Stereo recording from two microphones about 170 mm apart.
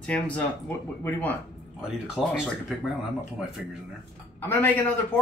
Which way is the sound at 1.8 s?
5° right (ahead or behind).